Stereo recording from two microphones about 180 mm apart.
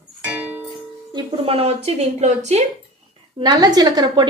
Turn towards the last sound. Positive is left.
turn(degrees=-20)  # may be behind; listen again after turning